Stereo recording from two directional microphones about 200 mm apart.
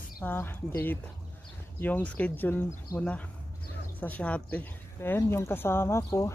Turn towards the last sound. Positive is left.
turn(degrees=15)  # may be behind; listen again after turning